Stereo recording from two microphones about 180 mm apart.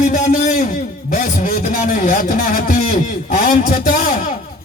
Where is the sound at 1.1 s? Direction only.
50° left (ahead or behind).